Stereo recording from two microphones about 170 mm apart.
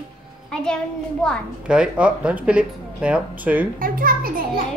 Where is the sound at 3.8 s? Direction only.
55° right (ahead or behind).